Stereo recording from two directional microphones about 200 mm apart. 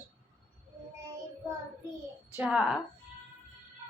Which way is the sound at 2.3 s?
5° right (ahead or behind).